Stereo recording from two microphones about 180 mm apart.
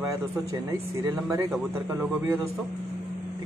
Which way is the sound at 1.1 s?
15° right (ahead or behind).